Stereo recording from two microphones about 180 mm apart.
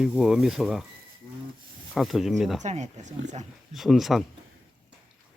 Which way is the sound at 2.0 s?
Centre (ahead or behind).